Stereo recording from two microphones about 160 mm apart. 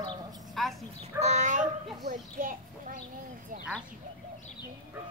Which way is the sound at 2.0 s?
60° right (ahead or behind).